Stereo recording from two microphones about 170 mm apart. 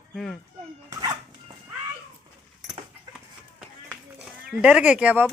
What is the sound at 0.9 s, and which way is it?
Dog, 20° right (ahead or behind).